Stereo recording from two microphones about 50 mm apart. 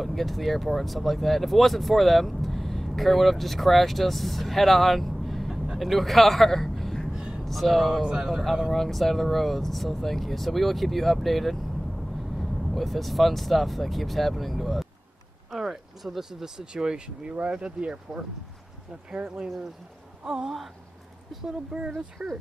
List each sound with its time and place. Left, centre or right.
0.0 s a man's voice: centre
7.1 s vehicle: centre
7.4 s speech: centre
8.0 s speech: centre